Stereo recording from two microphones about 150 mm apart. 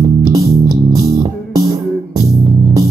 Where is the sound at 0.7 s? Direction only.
25° right (ahead or behind).